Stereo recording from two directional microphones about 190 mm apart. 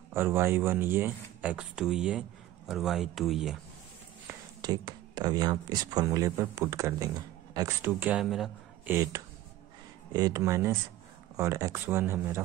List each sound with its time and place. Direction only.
0.1 s speech: 10° right (ahead or behind)
4.3 s speech: 20° right (ahead or behind)